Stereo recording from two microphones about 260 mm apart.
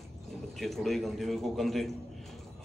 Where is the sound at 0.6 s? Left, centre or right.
Centre.